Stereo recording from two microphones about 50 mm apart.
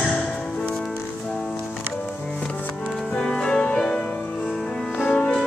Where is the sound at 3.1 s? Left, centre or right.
Centre.